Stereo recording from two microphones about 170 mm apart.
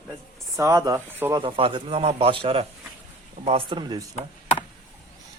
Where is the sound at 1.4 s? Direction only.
30° right (ahead or behind).